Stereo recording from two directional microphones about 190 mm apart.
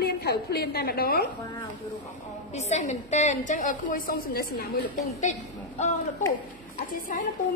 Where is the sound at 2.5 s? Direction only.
35° left (ahead or behind); by 4.7 s 55° left (ahead or behind).